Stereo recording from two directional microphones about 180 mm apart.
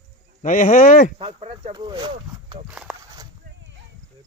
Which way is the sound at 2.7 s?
5° right (ahead or behind).